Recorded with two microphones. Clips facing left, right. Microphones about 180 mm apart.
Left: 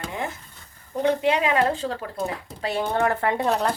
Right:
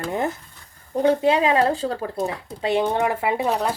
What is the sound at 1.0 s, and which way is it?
Speech, 30° right (ahead or behind).